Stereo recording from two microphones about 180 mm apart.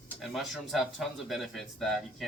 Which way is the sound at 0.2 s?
Centre (ahead or behind).